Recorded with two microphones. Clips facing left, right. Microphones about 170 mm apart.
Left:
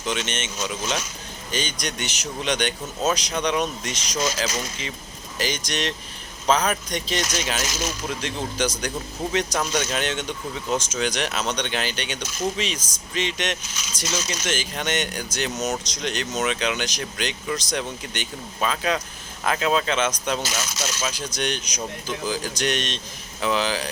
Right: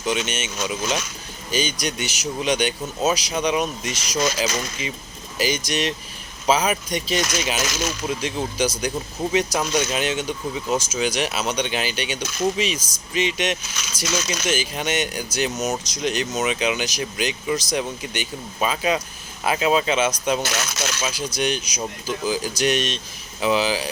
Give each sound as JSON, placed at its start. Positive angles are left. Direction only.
{"t": 0.0, "sound": "speech", "side_deg": -10}
{"t": 8.2, "sound": "speech", "side_deg": -10}
{"t": 14.0, "sound": "speech", "side_deg": -70}
{"t": 14.4, "sound": "speech", "side_deg": -10}
{"t": 20.4, "sound": "speech", "side_deg": -60}
{"t": 21.0, "sound": "speech", "side_deg": -10}